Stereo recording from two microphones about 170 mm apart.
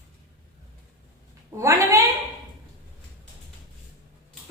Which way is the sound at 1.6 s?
20° right (ahead or behind).